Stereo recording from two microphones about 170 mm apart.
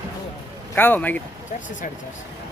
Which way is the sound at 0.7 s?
10° left (ahead or behind).